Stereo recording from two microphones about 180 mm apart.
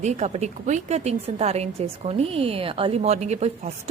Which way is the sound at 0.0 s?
40° right (ahead or behind).